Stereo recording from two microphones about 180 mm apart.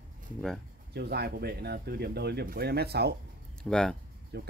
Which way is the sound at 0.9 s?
65° right (ahead or behind).